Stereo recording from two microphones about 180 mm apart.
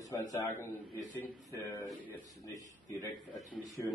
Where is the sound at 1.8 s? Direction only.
10° left (ahead or behind).